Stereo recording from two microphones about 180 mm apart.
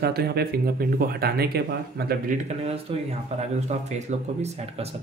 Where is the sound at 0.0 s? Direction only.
60° right (ahead or behind).